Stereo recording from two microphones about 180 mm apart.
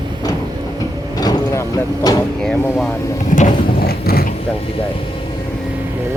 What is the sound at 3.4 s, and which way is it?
Mechanisms, 60° left (ahead or behind).